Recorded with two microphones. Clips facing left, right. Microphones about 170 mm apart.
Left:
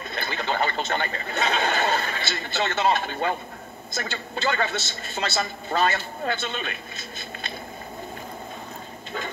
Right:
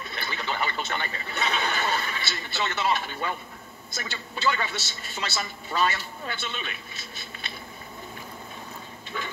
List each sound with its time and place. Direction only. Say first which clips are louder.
0.1 s a man's voice: left 5 dB; 50° left (ahead or behind)